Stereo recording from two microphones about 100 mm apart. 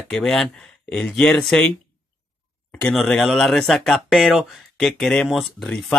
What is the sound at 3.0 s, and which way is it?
Speech, 5° left (ahead or behind).